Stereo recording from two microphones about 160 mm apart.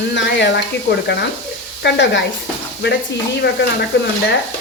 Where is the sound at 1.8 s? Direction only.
90° left.